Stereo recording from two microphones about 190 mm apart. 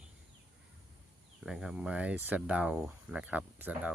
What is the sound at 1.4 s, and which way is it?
Speech, 5° right (ahead or behind).